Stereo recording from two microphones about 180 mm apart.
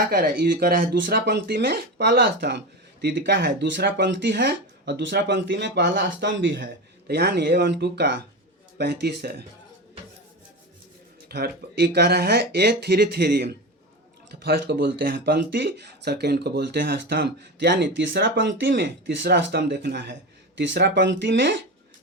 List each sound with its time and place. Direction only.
0.1 s speech: 55° right (ahead or behind); by 6.7 s 75° right (ahead or behind)
7.1 s speech: 65° right (ahead or behind)
11.3 s speech: 60° right (ahead or behind)